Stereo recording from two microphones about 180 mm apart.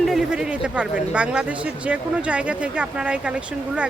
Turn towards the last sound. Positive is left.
turn(degrees=-5)  # may be behind; listen again after turning